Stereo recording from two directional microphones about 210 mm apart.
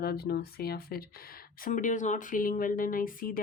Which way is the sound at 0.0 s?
50° left (ahead or behind).